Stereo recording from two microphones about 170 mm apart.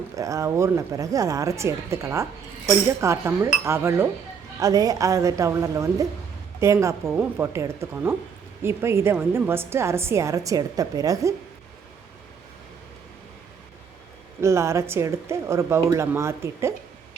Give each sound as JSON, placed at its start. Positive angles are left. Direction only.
{"t": 0.2, "sound": "a woman's voice", "side_deg": -20}
{"t": 14.4, "sound": "a woman's voice", "side_deg": -15}